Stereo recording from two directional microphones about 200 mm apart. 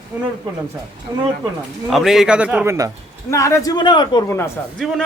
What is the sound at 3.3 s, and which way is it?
A man's voice, 15° left (ahead or behind).